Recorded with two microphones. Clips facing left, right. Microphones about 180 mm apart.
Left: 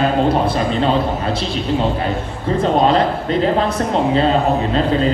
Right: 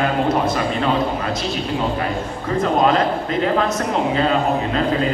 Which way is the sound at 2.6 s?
30° left (ahead or behind).